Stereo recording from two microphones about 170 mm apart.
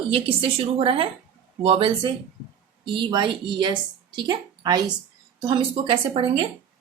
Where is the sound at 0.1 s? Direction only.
35° right (ahead or behind).